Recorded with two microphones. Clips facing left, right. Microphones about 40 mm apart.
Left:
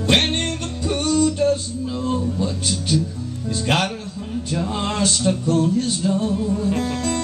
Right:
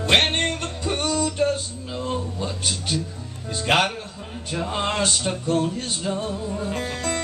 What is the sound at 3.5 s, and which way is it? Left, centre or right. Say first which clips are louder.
Speech: even; centre.